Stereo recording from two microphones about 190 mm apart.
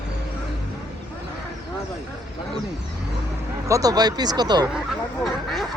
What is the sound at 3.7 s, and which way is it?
Speech, 15° right (ahead or behind).